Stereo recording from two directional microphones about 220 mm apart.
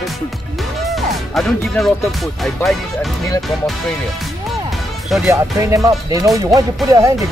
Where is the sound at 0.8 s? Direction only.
Centre (ahead or behind).